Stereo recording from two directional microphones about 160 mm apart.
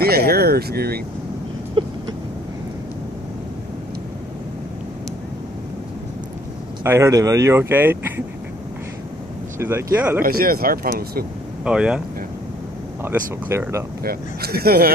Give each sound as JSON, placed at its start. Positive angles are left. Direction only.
{"t": 0.0, "sound": "speech", "side_deg": -75}
{"t": 1.8, "sound": "vehicle", "side_deg": -30}
{"t": 6.8, "sound": "speech", "side_deg": -15}
{"t": 9.6, "sound": "speech", "side_deg": -15}
{"t": 10.2, "sound": "speech", "side_deg": -65}
{"t": 11.6, "sound": "speech", "side_deg": -5}
{"t": 13.0, "sound": "speech", "side_deg": -15}
{"t": 14.0, "sound": "speech", "side_deg": -75}